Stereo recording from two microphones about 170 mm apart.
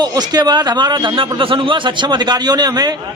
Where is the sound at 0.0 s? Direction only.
25° right (ahead or behind).